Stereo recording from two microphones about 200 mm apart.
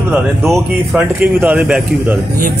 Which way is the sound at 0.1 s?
15° right (ahead or behind).